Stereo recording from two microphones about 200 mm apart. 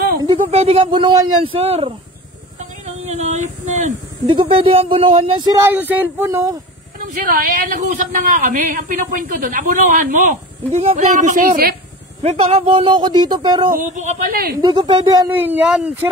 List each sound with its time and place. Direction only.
0.2 s speech: 25° right (ahead or behind)
3.1 s speech: 35° right (ahead or behind); by 5.7 s 20° right (ahead or behind)
5.7 s speech: 10° right (ahead or behind)
7.0 s a man's voice: 45° right (ahead or behind)
12.2 s speech: 30° right (ahead or behind)
13.7 s speech: 40° right (ahead or behind)
14.6 s speech: 20° right (ahead or behind)
15.3 s speech: 10° right (ahead or behind)